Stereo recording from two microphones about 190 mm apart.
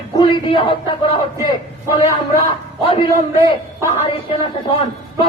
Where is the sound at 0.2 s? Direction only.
25° left (ahead or behind).